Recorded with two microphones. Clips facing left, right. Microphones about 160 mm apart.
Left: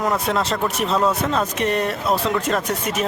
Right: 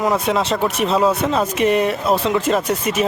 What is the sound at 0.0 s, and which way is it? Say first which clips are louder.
Speech: right 3 dB; centre (ahead or behind).